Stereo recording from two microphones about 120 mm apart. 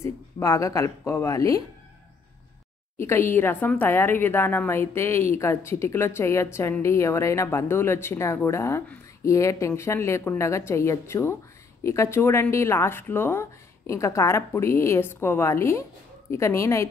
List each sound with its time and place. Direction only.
0.0 s speech: 25° left (ahead or behind)
3.0 s speech: 20° left (ahead or behind)